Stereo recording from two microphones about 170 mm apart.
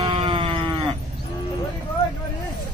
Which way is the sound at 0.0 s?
30° right (ahead or behind).